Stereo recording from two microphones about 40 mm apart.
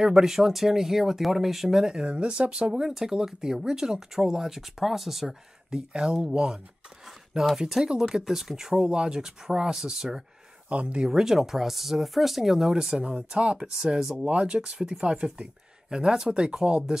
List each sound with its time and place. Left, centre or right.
0.0 s speech: centre
2.1 s speech: right; by 5.3 s centre
5.7 s speech: right
7.4 s speech: centre
10.7 s speech: right
11.1 s speech: centre
13.0 s speech: right
13.7 s speech: centre
14.1 s speech: right